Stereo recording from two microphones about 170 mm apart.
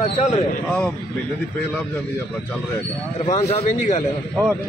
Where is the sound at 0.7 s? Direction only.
10° left (ahead or behind).